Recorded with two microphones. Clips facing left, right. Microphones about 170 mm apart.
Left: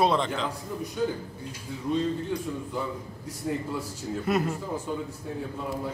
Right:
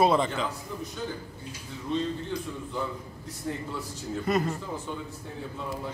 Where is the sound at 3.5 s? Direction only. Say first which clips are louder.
Left 3 dB; 5° left (ahead or behind).